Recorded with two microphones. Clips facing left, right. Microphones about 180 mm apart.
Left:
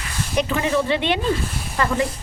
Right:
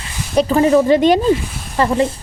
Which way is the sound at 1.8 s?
30° right (ahead or behind).